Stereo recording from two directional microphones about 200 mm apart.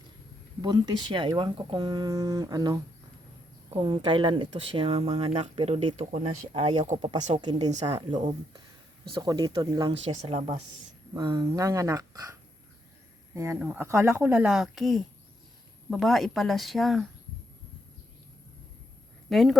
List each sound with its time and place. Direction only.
0.6 s speech: 20° right (ahead or behind)
7.7 s speech: 35° right (ahead or behind)
7.9 s speech: 25° right (ahead or behind)
10.0 s speech: 30° right (ahead or behind); by 17.1 s centre (ahead or behind)
19.3 s speech: centre (ahead or behind)